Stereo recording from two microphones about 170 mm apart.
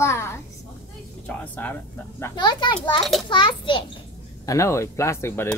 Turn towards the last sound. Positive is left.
turn(degrees=15)  # may be behind; listen again after turning